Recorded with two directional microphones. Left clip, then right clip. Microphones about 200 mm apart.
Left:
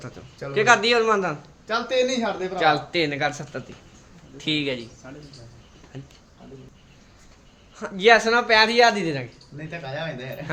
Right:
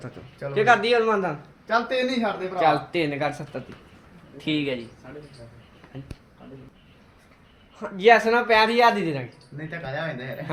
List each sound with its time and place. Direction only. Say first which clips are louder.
0.5 s a man's voice: left 1 dB; 5° left (ahead or behind)
1.6 s speech: left 1 dB; 40° left (ahead or behind)
2.6 s speech: left 1 dB; centre (ahead or behind)
7.8 s speech: even; 5° left (ahead or behind)
9.6 s a man's voice: right 1 dB; 15° left (ahead or behind)